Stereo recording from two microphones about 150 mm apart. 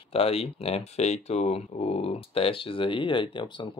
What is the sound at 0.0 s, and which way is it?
Speech, 40° left (ahead or behind).